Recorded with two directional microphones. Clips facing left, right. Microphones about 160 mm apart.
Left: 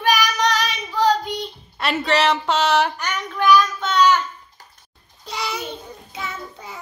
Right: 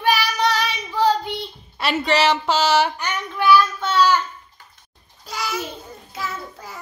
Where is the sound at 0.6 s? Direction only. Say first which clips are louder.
Even; 10° left (ahead or behind).